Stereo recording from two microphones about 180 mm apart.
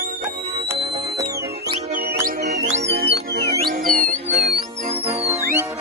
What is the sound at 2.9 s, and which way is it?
Music, 65° right (ahead or behind).